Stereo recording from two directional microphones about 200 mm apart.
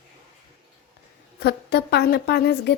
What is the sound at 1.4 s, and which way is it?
A woman's voice, 55° left (ahead or behind).